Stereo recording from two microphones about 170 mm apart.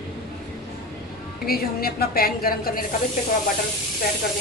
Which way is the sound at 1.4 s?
60° left (ahead or behind).